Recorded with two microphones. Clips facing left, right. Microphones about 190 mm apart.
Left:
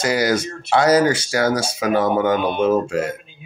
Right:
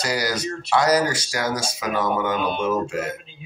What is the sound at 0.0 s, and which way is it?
Speech, 25° left (ahead or behind).